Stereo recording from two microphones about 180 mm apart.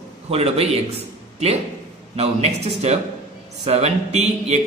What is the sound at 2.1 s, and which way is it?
Speech, 35° right (ahead or behind).